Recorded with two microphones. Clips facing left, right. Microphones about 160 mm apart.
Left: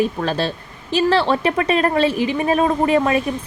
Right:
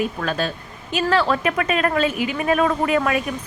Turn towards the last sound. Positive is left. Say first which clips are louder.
# left 3 dB
turn(degrees=30)  # may be behind; listen again after turning